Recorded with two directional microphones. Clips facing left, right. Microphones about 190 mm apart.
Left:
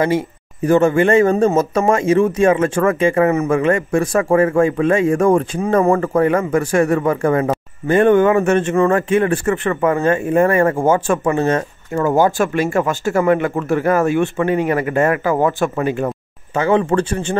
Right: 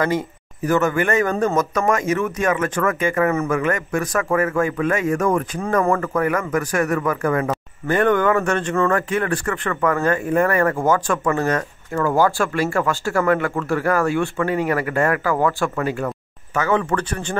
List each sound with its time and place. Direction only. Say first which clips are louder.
0.7 s speech: left 6 dB; 30° left (ahead or behind)